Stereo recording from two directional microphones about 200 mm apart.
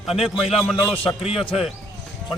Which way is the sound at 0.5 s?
5° left (ahead or behind).